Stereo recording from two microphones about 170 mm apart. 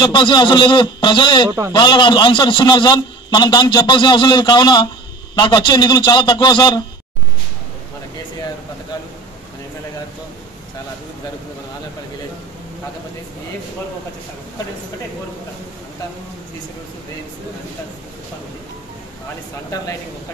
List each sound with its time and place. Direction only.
0.0 s a man's voice: 25° left (ahead or behind)